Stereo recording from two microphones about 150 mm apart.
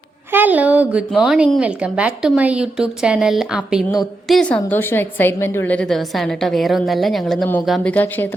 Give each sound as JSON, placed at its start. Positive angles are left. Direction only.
{"t": 0.3, "sound": "a woman's voice", "side_deg": -10}
{"t": 7.9, "sound": "speech", "side_deg": 15}